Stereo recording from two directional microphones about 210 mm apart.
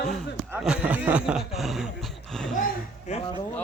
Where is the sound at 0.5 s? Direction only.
5° right (ahead or behind).